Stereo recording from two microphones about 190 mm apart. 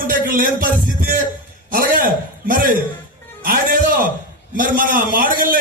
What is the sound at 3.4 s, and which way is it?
Music, 45° right (ahead or behind).